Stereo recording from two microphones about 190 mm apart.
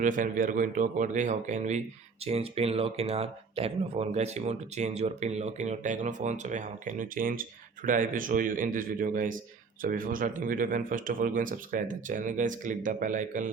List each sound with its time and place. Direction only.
0.0 s speech: 45° right (ahead or behind)